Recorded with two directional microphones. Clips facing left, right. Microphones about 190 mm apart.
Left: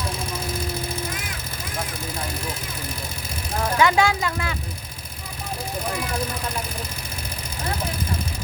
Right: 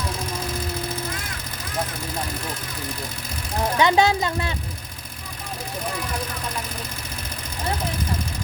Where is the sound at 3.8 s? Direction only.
25° right (ahead or behind).